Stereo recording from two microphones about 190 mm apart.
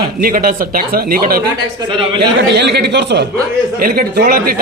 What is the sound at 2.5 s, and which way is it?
Speech, 60° right (ahead or behind).